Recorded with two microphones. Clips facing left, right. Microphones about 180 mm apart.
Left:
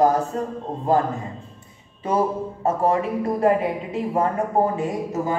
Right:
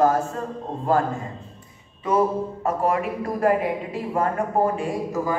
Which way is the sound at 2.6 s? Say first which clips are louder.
Left 3 dB; 25° left (ahead or behind).